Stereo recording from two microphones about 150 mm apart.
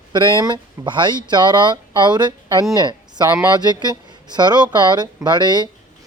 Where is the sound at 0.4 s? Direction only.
30° right (ahead or behind).